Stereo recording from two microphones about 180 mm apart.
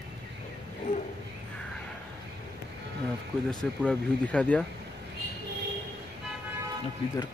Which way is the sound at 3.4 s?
5° left (ahead or behind).